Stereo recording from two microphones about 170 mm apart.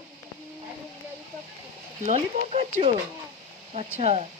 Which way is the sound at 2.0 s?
40° right (ahead or behind).